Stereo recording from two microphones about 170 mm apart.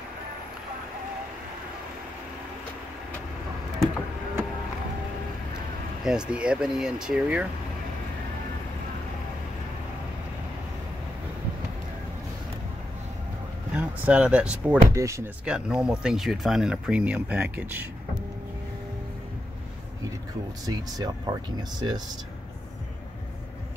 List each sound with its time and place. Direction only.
6.0 s speech: 5° right (ahead or behind)
13.7 s speech: 10° right (ahead or behind)
15.0 s speech: 15° right (ahead or behind)
15.4 s speech: 5° right (ahead or behind)
20.6 s speech: 25° right (ahead or behind)